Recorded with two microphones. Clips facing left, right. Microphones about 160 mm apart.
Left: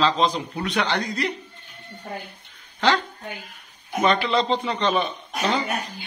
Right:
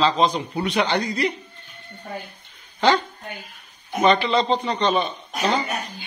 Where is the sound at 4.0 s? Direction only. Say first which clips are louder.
Right 2 dB; centre (ahead or behind).